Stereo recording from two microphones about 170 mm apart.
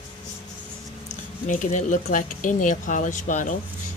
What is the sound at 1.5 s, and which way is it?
Speech, 45° left (ahead or behind).